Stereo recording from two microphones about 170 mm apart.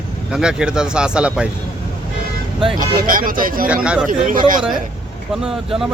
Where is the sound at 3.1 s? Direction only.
55° right (ahead or behind).